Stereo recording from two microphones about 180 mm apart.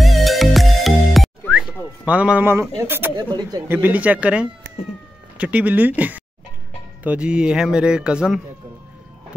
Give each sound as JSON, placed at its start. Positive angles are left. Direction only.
{"t": 0.0, "sound": "music", "side_deg": 0}
{"t": 2.0, "sound": "speech", "side_deg": -5}
{"t": 3.7, "sound": "speech", "side_deg": -10}